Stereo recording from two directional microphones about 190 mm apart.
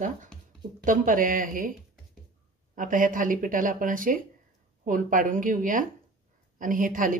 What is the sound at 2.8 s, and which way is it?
Speech, 45° right (ahead or behind).